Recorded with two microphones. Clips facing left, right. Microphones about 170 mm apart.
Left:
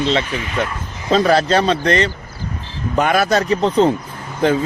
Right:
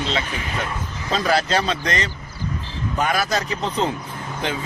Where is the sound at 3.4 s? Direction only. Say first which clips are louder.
Left 9 dB; 35° left (ahead or behind).